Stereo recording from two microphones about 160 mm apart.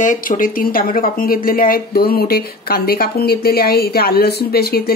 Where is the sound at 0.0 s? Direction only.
55° left (ahead or behind).